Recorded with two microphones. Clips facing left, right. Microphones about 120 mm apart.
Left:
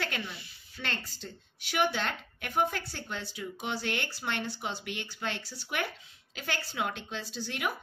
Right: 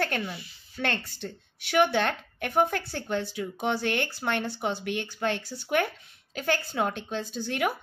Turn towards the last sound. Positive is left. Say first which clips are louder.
# right 7 dB
turn(degrees=-55)  # may be behind; listen again after turning